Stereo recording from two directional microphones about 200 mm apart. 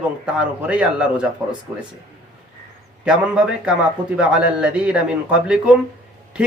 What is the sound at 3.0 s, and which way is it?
Speech, 5° right (ahead or behind).